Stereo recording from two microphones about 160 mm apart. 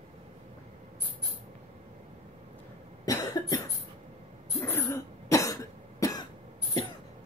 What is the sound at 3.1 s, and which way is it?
Cough, 25° left (ahead or behind).